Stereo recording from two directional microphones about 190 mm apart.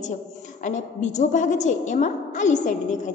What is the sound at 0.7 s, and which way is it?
A woman's voice, 40° left (ahead or behind).